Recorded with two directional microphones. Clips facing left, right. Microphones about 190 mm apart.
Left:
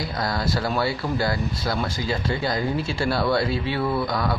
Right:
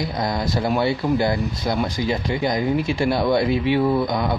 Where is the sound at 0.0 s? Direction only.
20° right (ahead or behind).